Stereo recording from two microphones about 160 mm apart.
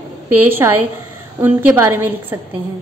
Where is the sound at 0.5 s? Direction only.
15° right (ahead or behind).